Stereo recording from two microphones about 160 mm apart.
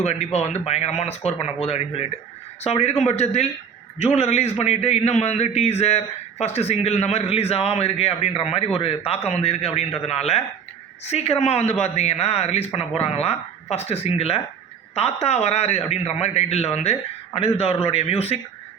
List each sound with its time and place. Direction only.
0.0 s a man's voice: 40° left (ahead or behind)